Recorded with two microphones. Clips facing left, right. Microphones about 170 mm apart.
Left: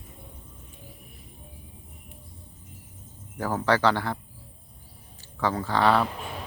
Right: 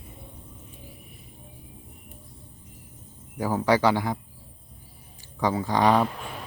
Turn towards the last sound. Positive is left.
turn(degrees=-15)  # may be behind; listen again after turning